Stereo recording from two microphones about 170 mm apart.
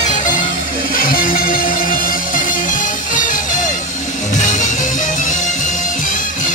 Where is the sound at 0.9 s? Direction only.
55° left (ahead or behind).